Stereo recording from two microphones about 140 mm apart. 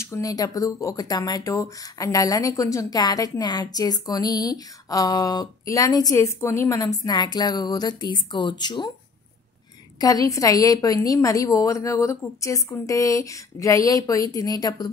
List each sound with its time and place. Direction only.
0.0 s speech: 20° left (ahead or behind)
9.9 s speech: 25° left (ahead or behind)